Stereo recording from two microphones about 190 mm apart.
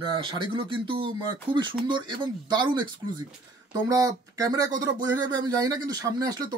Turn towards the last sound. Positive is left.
turn(degrees=-20)  # may be behind; listen again after turning